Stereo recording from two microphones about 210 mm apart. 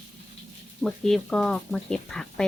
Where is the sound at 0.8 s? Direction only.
5° left (ahead or behind).